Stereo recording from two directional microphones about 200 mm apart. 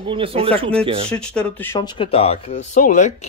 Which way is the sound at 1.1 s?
5° left (ahead or behind).